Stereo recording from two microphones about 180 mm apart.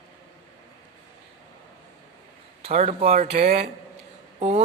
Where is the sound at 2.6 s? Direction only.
35° right (ahead or behind).